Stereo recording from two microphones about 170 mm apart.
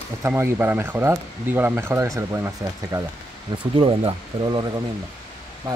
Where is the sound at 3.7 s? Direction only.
30° right (ahead or behind).